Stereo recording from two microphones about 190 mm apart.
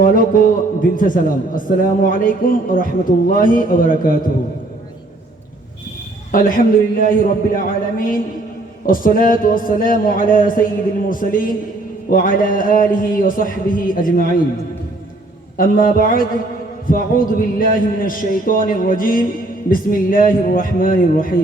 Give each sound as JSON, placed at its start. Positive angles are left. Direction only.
{"t": 0.0, "sound": "a man's voice", "side_deg": 45}
{"t": 6.3, "sound": "a man's voice", "side_deg": 45}
{"t": 15.5, "sound": "a man's voice", "side_deg": 45}